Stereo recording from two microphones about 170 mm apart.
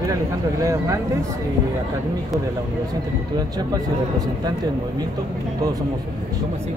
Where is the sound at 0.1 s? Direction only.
20° right (ahead or behind).